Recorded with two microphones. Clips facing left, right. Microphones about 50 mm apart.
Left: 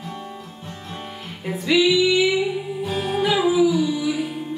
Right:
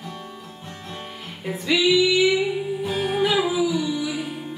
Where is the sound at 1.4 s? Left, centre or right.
Centre.